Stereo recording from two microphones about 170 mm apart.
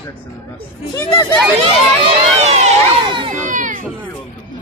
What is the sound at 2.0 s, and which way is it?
Run, 40° right (ahead or behind).